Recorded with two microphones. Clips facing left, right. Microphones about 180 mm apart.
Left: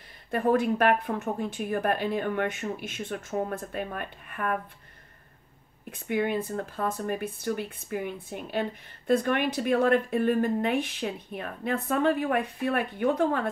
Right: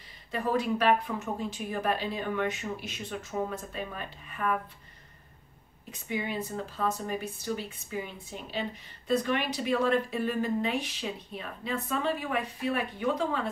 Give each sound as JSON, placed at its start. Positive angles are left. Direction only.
{"t": 0.3, "sound": "speech", "side_deg": 55}
{"t": 5.9, "sound": "speech", "side_deg": 55}